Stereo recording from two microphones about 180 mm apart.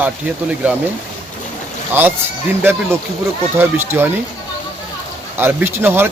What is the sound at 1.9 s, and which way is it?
Speech, 10° right (ahead or behind).